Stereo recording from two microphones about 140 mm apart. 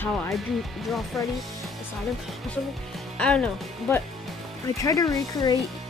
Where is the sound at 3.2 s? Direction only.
10° left (ahead or behind).